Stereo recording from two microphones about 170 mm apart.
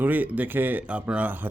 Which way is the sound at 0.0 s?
10° right (ahead or behind).